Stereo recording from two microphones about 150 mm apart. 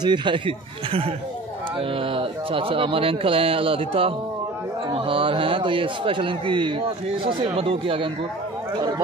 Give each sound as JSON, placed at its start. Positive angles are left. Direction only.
{"t": 0.0, "sound": "speech", "side_deg": -30}